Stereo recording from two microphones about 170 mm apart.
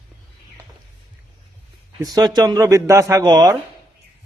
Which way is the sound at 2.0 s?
25° right (ahead or behind).